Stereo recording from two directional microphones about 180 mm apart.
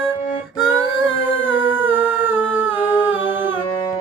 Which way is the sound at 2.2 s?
10° right (ahead or behind).